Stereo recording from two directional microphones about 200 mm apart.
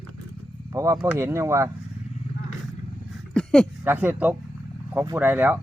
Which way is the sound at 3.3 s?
5° left (ahead or behind).